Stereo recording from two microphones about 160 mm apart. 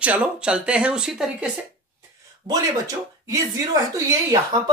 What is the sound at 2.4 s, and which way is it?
Speech, 20° right (ahead or behind).